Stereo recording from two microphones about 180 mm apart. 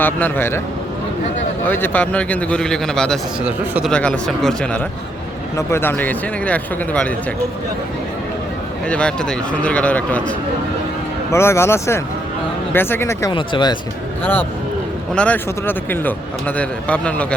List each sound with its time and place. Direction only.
0.0 s speech: 10° left (ahead or behind)
1.6 s speech: 10° left (ahead or behind); by 3.9 s 5° right (ahead or behind)
3.9 s speech: 5° left (ahead or behind)
8.9 s speech: 5° left (ahead or behind)
13.3 s speech: 25° left (ahead or behind)
15.1 s speech: 5° left (ahead or behind)